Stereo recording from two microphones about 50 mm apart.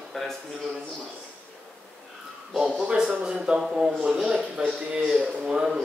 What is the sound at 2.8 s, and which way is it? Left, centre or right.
A man's voice, centre.